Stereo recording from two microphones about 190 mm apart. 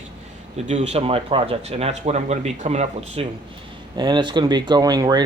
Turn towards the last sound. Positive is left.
turn(degrees=-20)  # may be behind; listen again after turning